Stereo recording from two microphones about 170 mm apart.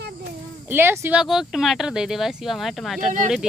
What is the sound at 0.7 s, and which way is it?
Speech, 10° right (ahead or behind).